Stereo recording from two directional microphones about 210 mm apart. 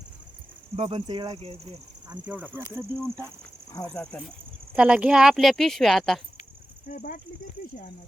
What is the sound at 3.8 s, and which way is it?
Speech, 5° left (ahead or behind).